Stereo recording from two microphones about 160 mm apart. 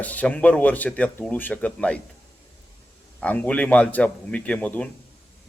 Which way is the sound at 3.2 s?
10° left (ahead or behind).